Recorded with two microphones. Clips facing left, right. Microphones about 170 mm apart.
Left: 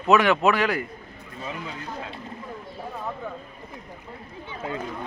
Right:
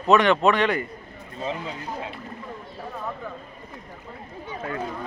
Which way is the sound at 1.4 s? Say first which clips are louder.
Right 4 dB; 30° right (ahead or behind).